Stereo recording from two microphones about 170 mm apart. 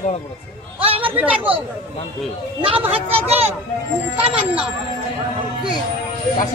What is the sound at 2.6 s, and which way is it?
Speech, 35° right (ahead or behind).